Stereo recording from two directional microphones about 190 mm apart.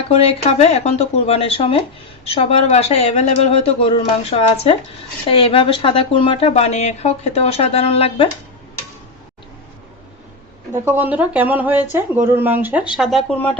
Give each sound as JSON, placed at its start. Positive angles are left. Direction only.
{"t": 0.1, "sound": "speech", "side_deg": 35}
{"t": 10.7, "sound": "speech", "side_deg": -10}